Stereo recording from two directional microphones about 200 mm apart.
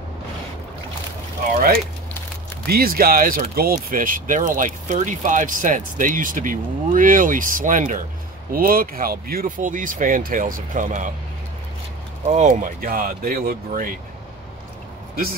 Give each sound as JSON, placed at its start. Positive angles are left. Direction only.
{"t": 2.6, "sound": "speech", "side_deg": -50}
{"t": 12.3, "sound": "speech", "side_deg": -35}